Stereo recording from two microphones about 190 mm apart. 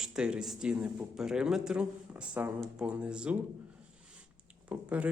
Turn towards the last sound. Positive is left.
turn(degrees=-5)  # may be behind; listen again after turning